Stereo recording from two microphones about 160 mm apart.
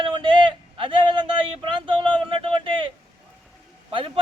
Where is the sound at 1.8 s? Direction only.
30° right (ahead or behind).